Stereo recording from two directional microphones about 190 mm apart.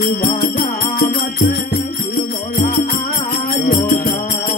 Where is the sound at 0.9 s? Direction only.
45° left (ahead or behind).